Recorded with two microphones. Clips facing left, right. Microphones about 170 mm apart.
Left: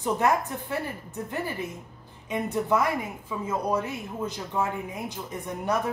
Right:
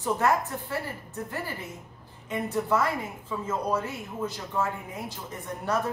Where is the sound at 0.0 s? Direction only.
20° left (ahead or behind).